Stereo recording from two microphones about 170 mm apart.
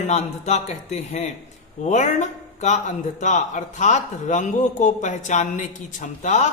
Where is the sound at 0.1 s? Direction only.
40° left (ahead or behind).